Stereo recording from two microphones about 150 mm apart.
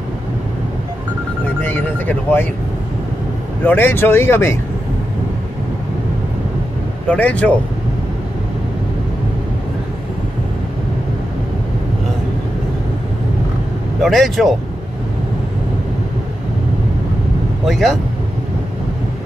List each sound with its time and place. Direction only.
1.6 s a sound: 10° left (ahead or behind)
3.6 s speech: 15° left (ahead or behind)
7.1 s speech: 10° left (ahead or behind)
14.0 s speech: centre (ahead or behind)
17.6 s speech: centre (ahead or behind)